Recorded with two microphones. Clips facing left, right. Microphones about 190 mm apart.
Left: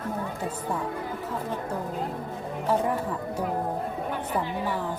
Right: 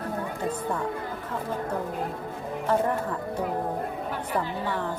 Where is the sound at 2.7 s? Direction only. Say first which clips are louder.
Right 1 dB; 10° left (ahead or behind).